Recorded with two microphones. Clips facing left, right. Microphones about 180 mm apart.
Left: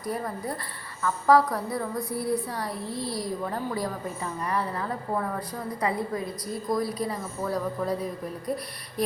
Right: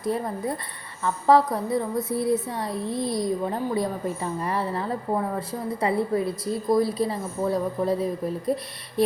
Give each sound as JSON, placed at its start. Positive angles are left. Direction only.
{"t": 0.0, "sound": "a woman's voice", "side_deg": -25}